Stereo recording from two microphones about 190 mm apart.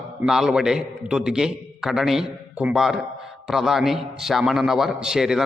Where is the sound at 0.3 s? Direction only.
5° right (ahead or behind).